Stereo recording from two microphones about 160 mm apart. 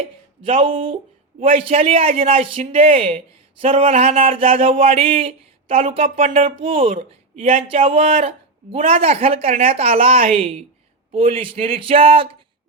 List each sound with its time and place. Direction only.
0.0 s a man's voice: 35° right (ahead or behind)